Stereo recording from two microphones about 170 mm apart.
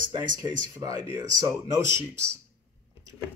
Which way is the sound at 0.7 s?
20° right (ahead or behind).